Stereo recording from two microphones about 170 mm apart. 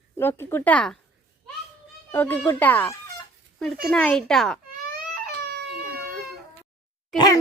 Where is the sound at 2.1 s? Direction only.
10° left (ahead or behind).